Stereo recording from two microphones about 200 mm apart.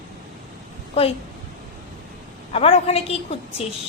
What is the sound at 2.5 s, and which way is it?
A woman's voice, 30° left (ahead or behind).